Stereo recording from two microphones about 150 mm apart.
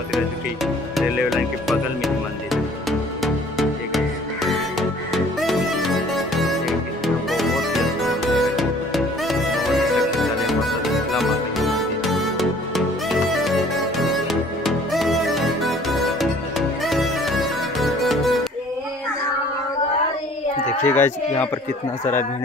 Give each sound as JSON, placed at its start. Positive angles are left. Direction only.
{"t": 0.9, "sound": "music", "side_deg": 0}
{"t": 20.8, "sound": "speech", "side_deg": 15}